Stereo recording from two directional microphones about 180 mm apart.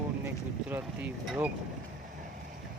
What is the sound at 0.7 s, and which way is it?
Speech, 10° right (ahead or behind).